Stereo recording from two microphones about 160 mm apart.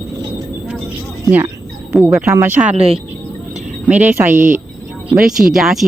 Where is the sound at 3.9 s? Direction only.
10° right (ahead or behind).